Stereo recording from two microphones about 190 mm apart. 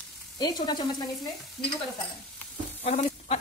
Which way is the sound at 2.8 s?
35° left (ahead or behind).